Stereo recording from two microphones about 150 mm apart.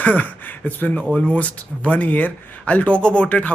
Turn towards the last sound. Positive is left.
turn(degrees=10)  # may be behind; listen again after turning